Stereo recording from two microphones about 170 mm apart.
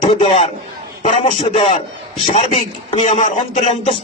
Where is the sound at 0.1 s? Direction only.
35° left (ahead or behind).